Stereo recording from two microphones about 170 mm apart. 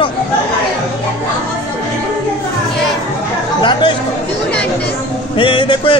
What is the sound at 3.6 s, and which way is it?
Music, 25° left (ahead or behind).